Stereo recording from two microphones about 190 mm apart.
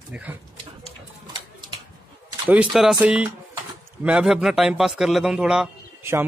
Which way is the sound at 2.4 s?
5° right (ahead or behind).